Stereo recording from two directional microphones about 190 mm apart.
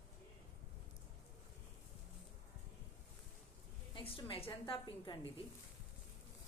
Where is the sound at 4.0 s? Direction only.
25° left (ahead or behind).